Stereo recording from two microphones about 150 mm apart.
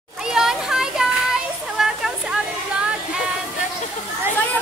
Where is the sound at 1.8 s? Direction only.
5° right (ahead or behind).